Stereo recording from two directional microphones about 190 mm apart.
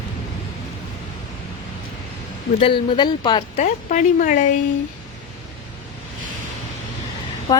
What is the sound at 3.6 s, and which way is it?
Speech, 40° left (ahead or behind).